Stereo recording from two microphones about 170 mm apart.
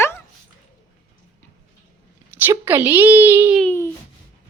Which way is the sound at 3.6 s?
10° left (ahead or behind).